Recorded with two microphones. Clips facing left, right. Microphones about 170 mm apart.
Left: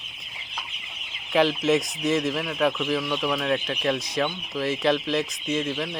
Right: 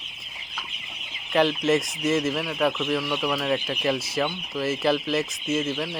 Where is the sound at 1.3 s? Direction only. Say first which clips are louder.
Even; centre (ahead or behind).